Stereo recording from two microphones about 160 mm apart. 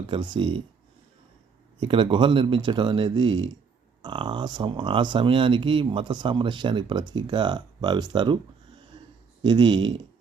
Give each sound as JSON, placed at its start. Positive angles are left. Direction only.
{"t": 0.1, "sound": "speech", "side_deg": -30}
{"t": 1.8, "sound": "speech", "side_deg": -35}
{"t": 9.4, "sound": "speech", "side_deg": -30}